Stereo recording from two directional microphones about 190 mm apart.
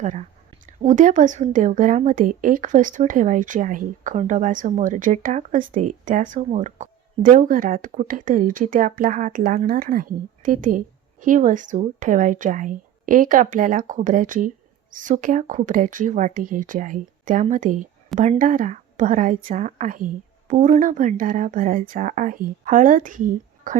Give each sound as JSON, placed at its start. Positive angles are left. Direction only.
{"t": 0.0, "sound": "speech", "side_deg": -40}